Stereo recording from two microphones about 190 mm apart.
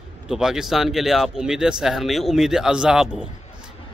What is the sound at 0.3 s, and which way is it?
Speech, 5° right (ahead or behind).